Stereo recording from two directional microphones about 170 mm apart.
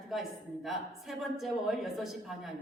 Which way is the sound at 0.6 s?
Centre (ahead or behind).